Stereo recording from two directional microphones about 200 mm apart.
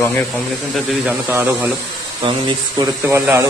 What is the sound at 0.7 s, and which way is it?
Speech, centre (ahead or behind).